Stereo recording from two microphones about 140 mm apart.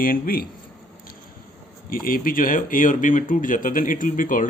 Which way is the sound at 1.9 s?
85° left.